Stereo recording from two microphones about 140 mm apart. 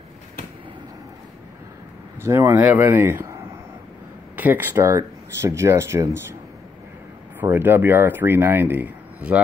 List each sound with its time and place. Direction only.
2.2 s speech: 20° right (ahead or behind)
4.4 s speech: 15° right (ahead or behind)
7.3 s speech: 15° right (ahead or behind)